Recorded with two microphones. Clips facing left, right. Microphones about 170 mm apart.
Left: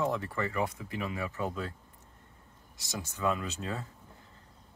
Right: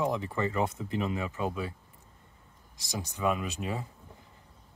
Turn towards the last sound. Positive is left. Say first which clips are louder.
# right 2 dB
turn(degrees=-15)  # may be behind; listen again after turning